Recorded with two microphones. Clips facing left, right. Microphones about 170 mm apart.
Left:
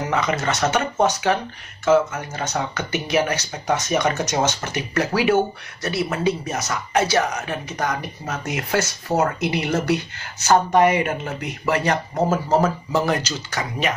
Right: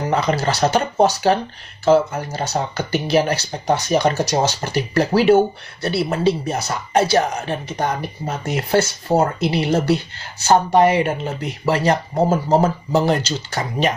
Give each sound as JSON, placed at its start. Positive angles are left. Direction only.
{"t": 0.1, "sound": "speech", "side_deg": -35}